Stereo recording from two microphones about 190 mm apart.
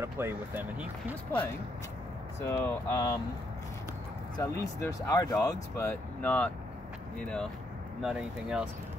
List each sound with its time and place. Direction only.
0.0 s speech: 10° right (ahead or behind)
2.5 s speech: 15° left (ahead or behind)
4.4 s speech: 15° left (ahead or behind); by 8.6 s 5° right (ahead or behind)